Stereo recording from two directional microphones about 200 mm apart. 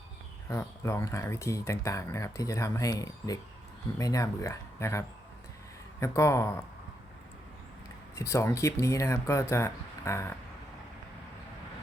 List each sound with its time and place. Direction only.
0.4 s speech: 15° left (ahead or behind)
8.1 s speech: 15° left (ahead or behind)